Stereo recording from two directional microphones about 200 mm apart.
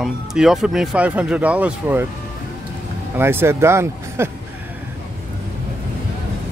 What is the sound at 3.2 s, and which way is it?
Speech, 10° right (ahead or behind).